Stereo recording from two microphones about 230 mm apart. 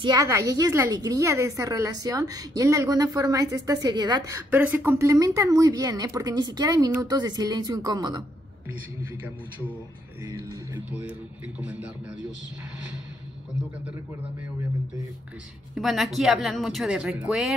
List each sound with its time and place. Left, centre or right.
0.0 s a woman's voice: centre
10.2 s a woman's voice: centre
15.7 s speech: centre